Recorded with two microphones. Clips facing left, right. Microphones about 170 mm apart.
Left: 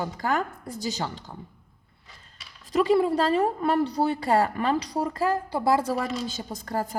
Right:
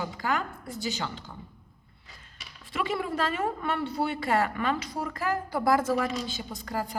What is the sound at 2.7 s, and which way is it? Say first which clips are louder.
A woman's voice: left 9 dB; 35° left (ahead or behind).